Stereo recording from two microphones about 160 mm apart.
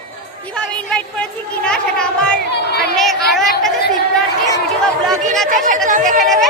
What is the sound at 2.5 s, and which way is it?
Speech, 90° left.